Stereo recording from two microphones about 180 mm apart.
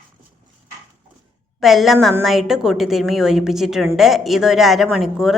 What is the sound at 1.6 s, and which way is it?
A woman's voice, centre (ahead or behind).